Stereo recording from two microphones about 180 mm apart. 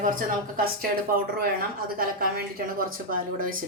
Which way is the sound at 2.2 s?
55° right (ahead or behind).